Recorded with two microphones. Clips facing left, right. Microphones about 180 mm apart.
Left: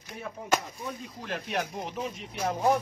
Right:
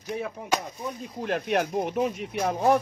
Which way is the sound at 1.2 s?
60° right (ahead or behind).